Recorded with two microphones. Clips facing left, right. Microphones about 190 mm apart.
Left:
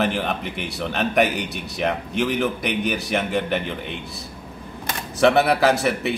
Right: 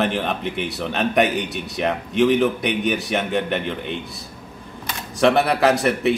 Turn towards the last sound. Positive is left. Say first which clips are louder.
# right 2 dB
turn(degrees=0)  # may be behind; listen again after turning